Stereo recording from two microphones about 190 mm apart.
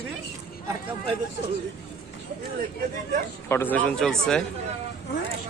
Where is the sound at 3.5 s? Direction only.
10° left (ahead or behind).